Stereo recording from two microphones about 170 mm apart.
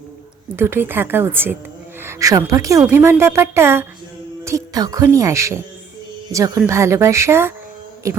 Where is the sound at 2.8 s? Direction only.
15° right (ahead or behind).